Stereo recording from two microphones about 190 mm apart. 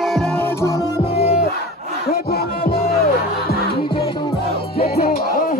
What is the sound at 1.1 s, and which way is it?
Music, 35° left (ahead or behind).